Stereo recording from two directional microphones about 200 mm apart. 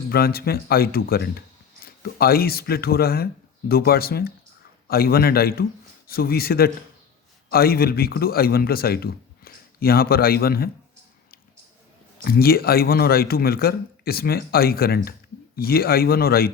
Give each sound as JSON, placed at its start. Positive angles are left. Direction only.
{"t": 0.1, "sound": "a man's voice", "side_deg": 50}
{"t": 12.2, "sound": "a man's voice", "side_deg": 50}